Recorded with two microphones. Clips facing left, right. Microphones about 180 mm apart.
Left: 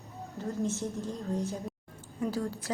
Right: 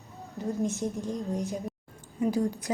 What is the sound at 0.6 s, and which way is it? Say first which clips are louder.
A woman's voice: right 2 dB; 15° right (ahead or behind).